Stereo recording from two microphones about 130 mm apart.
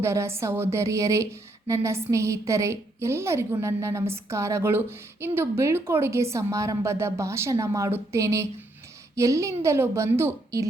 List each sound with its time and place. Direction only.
0.0 s a woman's voice: 20° right (ahead or behind)